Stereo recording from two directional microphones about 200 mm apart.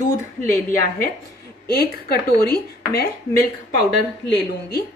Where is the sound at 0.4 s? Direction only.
45° left (ahead or behind).